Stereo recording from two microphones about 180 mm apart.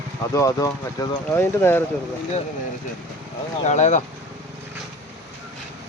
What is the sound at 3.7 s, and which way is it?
Speech, 40° left (ahead or behind).